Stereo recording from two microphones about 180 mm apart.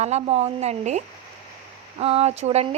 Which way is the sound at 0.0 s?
35° right (ahead or behind).